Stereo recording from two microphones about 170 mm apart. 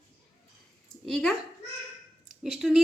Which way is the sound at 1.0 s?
Centre (ahead or behind).